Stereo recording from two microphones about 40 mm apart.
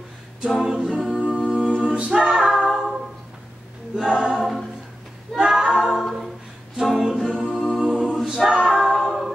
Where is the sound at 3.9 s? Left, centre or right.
Centre.